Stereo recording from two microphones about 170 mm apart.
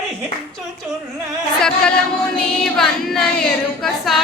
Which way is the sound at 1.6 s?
5° left (ahead or behind).